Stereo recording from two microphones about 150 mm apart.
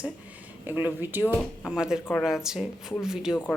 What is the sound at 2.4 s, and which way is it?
Speech, 5° right (ahead or behind).